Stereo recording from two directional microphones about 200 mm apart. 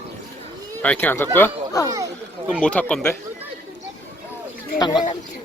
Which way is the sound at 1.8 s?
15° right (ahead or behind).